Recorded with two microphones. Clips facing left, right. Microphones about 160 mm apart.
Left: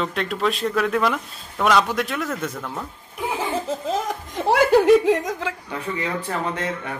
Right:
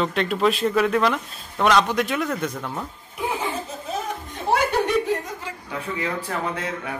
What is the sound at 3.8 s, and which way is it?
Chuckle, 90° left.